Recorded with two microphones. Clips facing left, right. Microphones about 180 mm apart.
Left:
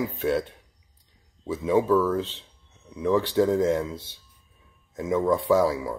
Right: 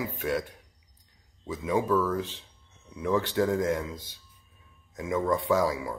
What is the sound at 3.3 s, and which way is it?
Speech, 20° left (ahead or behind).